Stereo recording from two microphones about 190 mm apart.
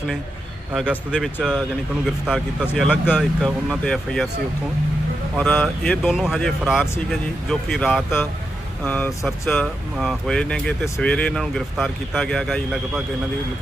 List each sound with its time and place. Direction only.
0.7 s speech: 5° right (ahead or behind)
5.4 s speech: 5° left (ahead or behind)